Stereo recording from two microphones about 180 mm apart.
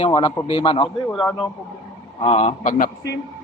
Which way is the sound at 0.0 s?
25° left (ahead or behind).